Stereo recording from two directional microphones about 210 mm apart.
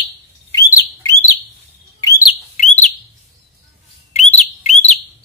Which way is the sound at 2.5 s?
35° left (ahead or behind).